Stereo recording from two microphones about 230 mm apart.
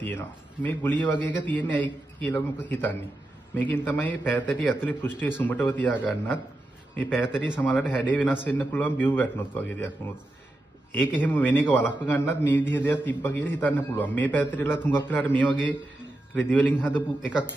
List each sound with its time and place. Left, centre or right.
0.0 s a man's voice: centre
11.2 s a man's voice: centre